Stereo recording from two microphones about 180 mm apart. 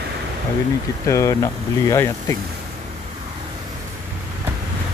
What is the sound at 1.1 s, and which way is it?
Speech, 15° left (ahead or behind).